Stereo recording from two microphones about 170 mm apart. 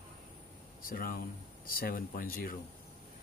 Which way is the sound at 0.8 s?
60° left (ahead or behind).